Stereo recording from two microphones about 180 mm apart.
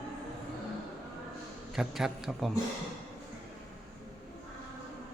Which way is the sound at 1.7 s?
Centre (ahead or behind).